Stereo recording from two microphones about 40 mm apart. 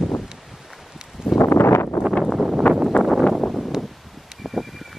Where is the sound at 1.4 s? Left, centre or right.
Left.